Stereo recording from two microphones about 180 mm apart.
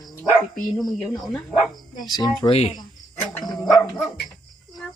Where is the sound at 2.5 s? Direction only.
35° left (ahead or behind).